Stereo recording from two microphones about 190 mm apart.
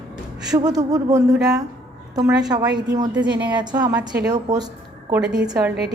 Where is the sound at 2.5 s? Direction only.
20° right (ahead or behind).